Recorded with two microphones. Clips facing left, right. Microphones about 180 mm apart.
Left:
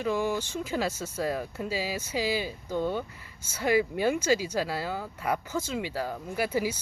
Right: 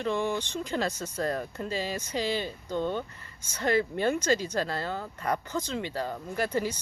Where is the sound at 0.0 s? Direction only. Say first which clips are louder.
Left 1 dB; 5° left (ahead or behind).